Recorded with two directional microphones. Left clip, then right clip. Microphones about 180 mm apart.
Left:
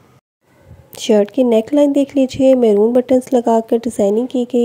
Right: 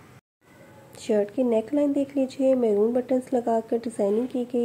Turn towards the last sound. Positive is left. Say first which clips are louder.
# left 10 dB
turn(degrees=40)  # may be behind; listen again after turning